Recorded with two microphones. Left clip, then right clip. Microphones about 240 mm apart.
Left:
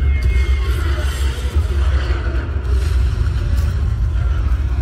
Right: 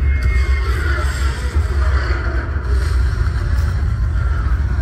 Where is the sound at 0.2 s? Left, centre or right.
Left.